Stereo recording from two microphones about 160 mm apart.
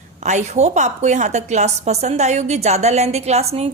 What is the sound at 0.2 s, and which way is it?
A woman's voice, 45° right (ahead or behind).